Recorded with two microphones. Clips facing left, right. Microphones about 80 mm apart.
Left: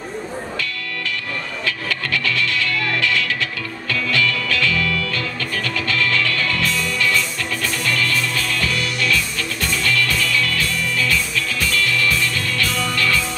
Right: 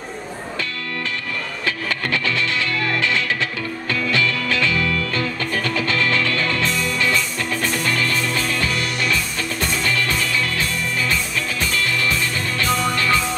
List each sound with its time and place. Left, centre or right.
1.7 s music: right